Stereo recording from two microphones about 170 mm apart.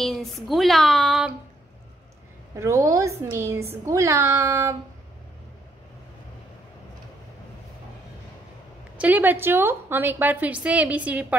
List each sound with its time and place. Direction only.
0.0 s speech: centre (ahead or behind)
2.5 s a woman's voice: 20° right (ahead or behind)
8.9 s a woman's voice: 10° right (ahead or behind)